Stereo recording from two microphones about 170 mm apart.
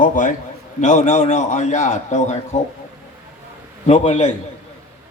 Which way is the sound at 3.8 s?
45° left (ahead or behind).